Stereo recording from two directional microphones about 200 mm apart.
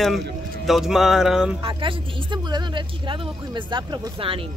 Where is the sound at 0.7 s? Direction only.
Centre (ahead or behind).